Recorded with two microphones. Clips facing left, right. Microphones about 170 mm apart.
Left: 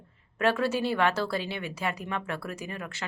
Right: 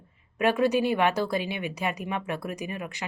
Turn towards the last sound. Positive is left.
turn(degrees=-15)  # may be behind; listen again after turning